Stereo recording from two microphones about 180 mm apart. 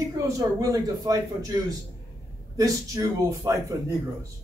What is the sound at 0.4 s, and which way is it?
A man's voice, 20° right (ahead or behind).